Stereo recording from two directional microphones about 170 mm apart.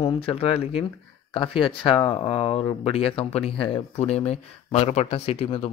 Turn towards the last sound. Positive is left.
turn(degrees=35)  # may be behind; listen again after turning